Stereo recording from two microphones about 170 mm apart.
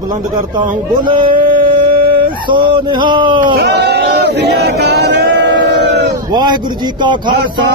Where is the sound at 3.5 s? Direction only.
75° right (ahead or behind); by 6.0 s 90° right.